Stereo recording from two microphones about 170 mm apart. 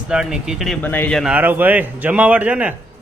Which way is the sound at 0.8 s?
10° left (ahead or behind).